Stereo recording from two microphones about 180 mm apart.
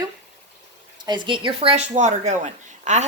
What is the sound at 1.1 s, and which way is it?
A woman's voice, 25° right (ahead or behind).